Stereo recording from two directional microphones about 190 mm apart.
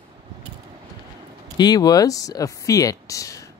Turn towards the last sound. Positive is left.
turn(degrees=15)  # may be behind; listen again after turning